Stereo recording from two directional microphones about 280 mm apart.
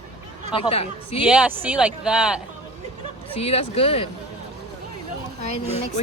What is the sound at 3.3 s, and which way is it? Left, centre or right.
Speech, left.